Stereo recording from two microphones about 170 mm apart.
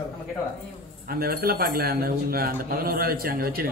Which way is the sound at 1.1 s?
60° right (ahead or behind).